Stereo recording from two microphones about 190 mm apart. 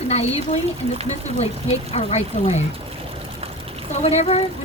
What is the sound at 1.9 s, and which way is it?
Speech, 35° left (ahead or behind).